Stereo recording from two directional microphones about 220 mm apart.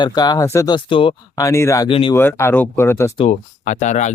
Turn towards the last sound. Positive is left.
turn(degrees=35)  # may be behind; listen again after turning